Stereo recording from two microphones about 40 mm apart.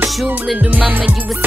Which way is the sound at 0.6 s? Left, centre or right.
Right.